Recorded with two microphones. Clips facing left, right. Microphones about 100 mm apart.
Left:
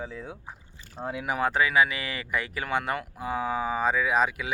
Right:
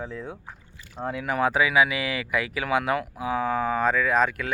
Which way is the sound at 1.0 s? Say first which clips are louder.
Right 2 dB; 10° left (ahead or behind).